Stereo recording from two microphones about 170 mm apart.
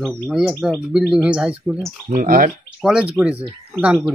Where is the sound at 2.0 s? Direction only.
55° right (ahead or behind).